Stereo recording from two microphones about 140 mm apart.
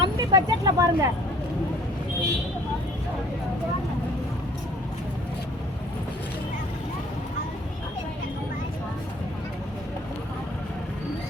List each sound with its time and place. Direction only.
0.0 s speech: 30° right (ahead or behind)